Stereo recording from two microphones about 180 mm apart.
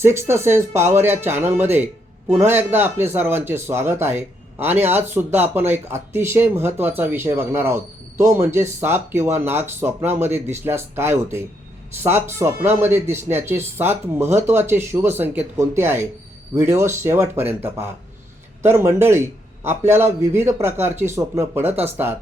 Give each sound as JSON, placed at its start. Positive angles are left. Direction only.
{"t": 0.0, "sound": "a man's voice", "side_deg": -15}